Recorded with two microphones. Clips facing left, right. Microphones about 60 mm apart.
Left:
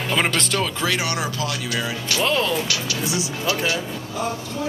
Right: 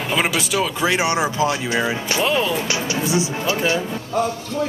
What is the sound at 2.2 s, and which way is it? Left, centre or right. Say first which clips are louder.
Speech: right 1 dB; centre.